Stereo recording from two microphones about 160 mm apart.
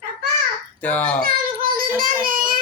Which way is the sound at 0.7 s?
10° left (ahead or behind).